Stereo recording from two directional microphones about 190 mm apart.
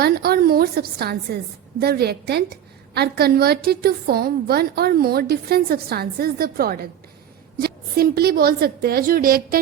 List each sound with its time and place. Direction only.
0.0 s a woman's voice: 55° right (ahead or behind)